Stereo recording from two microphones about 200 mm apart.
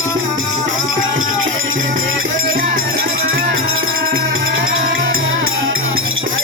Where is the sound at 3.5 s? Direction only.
85° right.